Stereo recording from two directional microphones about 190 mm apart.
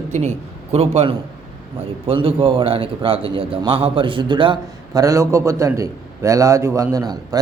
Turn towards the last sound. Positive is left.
turn(degrees=-20)  # may be behind; listen again after turning